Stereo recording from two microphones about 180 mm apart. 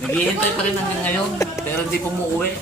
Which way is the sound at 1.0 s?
10° left (ahead or behind).